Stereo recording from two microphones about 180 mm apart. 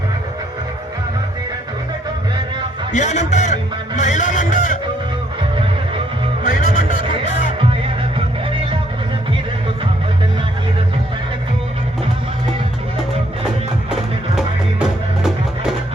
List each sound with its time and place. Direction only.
2.9 s a man's voice: 40° left (ahead or behind)
6.5 s music: 50° left (ahead or behind)
14.3 s music: centre (ahead or behind)